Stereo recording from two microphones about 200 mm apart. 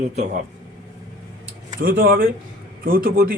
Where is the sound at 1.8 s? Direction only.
45° right (ahead or behind).